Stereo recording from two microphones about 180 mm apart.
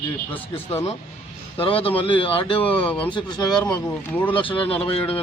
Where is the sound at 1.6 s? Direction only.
30° left (ahead or behind).